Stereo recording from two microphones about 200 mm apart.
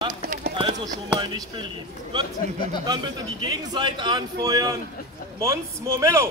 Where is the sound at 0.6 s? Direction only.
20° right (ahead or behind).